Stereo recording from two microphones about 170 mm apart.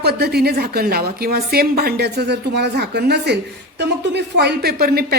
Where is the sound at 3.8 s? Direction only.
90° right; by 5.1 s 65° right (ahead or behind).